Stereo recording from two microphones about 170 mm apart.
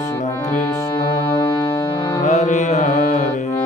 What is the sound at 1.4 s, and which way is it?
Music, 30° left (ahead or behind).